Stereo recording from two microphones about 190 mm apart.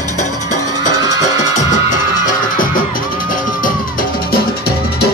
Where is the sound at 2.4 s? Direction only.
45° left (ahead or behind).